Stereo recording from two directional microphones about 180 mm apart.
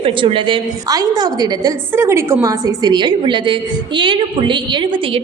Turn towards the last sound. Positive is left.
turn(degrees=-25)  # may be behind; listen again after turning